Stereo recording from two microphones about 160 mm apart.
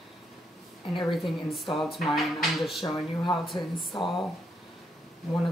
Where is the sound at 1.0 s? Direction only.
Centre (ahead or behind).